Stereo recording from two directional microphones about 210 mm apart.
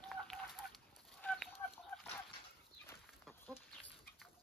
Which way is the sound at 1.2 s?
5° left (ahead or behind).